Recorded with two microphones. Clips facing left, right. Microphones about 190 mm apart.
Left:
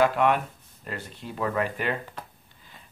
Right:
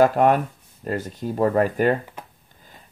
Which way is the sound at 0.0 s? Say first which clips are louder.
Right 5 dB; 40° right (ahead or behind).